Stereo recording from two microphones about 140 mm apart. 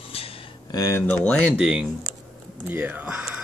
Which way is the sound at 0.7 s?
20° left (ahead or behind).